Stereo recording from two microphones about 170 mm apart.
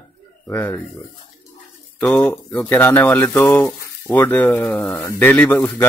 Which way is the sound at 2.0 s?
10° left (ahead or behind).